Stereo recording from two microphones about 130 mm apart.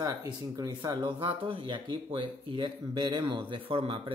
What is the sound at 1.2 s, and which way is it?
Speech, 45° right (ahead or behind).